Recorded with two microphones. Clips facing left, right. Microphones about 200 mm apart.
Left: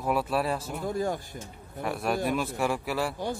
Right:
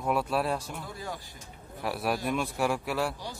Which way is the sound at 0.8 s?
50° left (ahead or behind).